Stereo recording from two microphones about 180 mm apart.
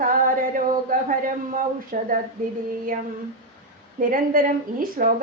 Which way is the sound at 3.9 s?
50° right (ahead or behind).